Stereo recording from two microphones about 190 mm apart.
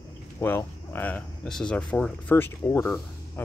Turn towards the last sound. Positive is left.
turn(degrees=10)  # may be behind; listen again after turning